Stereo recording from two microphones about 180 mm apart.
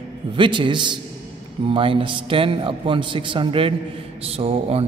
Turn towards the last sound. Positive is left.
turn(degrees=-30)  # may be behind; listen again after turning